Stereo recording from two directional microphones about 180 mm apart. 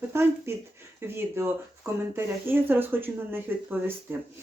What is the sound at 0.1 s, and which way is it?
Speech, 15° right (ahead or behind).